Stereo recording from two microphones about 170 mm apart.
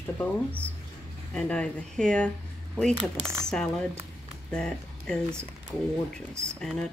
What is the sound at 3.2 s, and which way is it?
Speech, 15° right (ahead or behind).